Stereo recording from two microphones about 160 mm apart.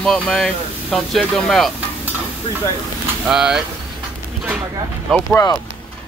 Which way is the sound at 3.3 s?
5° right (ahead or behind).